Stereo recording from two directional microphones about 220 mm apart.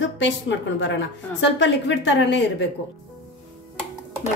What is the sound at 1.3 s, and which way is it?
Speech, 55° left (ahead or behind).